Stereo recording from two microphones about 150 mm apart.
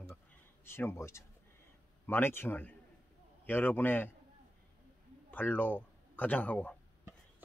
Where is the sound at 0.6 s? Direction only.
15° left (ahead or behind).